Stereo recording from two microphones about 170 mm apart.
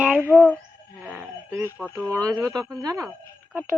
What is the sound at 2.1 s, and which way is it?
Speech, 20° right (ahead or behind).